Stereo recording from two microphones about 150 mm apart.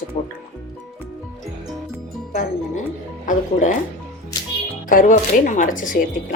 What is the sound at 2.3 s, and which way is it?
Speech, 70° left (ahead or behind).